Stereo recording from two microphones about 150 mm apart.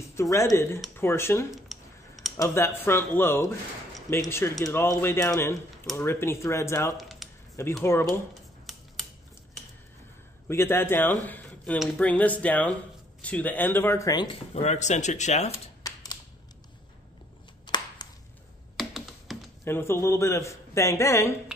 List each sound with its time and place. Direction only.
0.1 s a man's voice: 20° left (ahead or behind)
1.7 s a sound: centre (ahead or behind)
2.4 s speech: 15° left (ahead or behind)
7.0 s a sound: centre (ahead or behind)
7.8 s speech: 15° left (ahead or behind)
8.7 s a sound: centre (ahead or behind)
10.5 s speech: 15° left (ahead or behind)
14.5 s speech: 45° left (ahead or behind)
15.8 s typewriter: 25° left (ahead or behind)
17.6 s a sound: 30° left (ahead or behind)
18.8 s computer keyboard: centre (ahead or behind)
19.6 s a man's voice: 15° left (ahead or behind)